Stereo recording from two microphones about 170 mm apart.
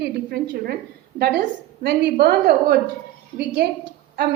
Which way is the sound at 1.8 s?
70° right (ahead or behind).